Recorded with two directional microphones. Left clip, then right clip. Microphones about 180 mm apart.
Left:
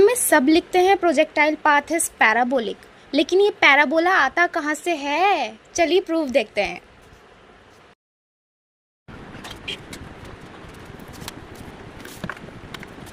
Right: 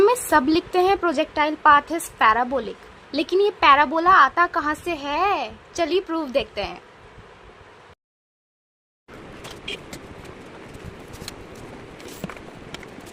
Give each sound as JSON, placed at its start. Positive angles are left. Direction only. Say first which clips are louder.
{"t": 0.0, "sound": "a woman's voice", "louder": "left 1 dB", "side_deg": 20}